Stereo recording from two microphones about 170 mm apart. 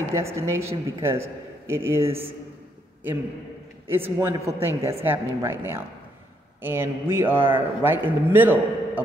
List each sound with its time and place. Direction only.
0.1 s a man's voice: 15° right (ahead or behind)
3.9 s a man's voice: 15° right (ahead or behind)